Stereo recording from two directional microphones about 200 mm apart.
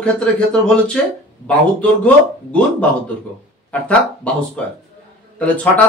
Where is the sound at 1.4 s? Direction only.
5° left (ahead or behind).